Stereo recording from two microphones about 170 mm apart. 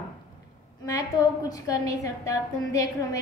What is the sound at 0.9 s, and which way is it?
A woman's voice, 20° left (ahead or behind).